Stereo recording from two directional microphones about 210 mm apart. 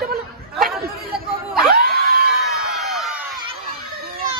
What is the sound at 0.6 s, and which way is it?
Chatter, centre (ahead or behind).